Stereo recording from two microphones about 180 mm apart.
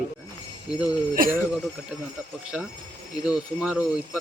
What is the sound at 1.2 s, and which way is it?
Speech, 50° right (ahead or behind).